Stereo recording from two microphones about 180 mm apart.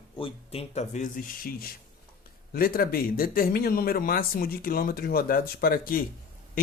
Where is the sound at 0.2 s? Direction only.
30° left (ahead or behind).